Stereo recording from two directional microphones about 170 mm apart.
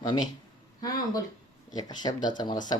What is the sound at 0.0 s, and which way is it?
Speech, 25° left (ahead or behind).